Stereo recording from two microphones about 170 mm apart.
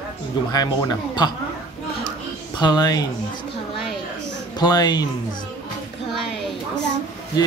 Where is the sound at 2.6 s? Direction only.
25° left (ahead or behind).